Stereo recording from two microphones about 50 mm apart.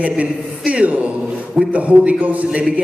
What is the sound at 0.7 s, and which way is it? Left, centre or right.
A man's voice, right.